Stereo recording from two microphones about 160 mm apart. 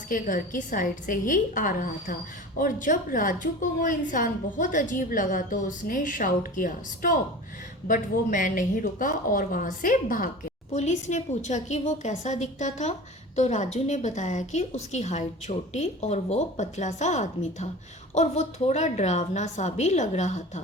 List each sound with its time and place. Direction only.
0.1 s a woman's voice: 55° left (ahead or behind)
10.8 s a woman's voice: 45° left (ahead or behind)